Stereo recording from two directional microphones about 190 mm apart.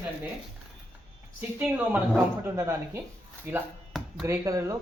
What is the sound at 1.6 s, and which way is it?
Speech, 10° right (ahead or behind).